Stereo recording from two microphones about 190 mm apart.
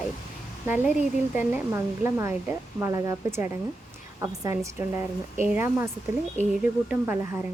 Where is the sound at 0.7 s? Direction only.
10° right (ahead or behind).